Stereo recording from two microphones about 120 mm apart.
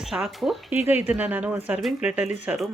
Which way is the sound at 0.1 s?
5° right (ahead or behind).